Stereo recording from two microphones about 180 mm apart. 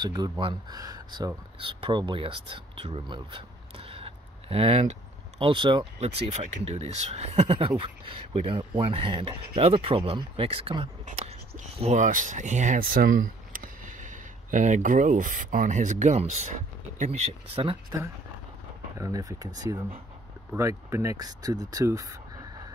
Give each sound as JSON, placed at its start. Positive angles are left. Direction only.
{"t": 0.0, "sound": "speech", "side_deg": -25}
{"t": 18.9, "sound": "speech", "side_deg": -20}